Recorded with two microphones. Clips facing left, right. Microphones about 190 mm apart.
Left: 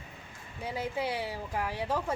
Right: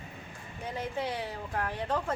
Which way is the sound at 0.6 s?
10° left (ahead or behind).